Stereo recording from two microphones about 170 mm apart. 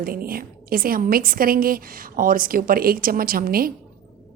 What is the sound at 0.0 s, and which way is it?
A woman's voice, 60° right (ahead or behind).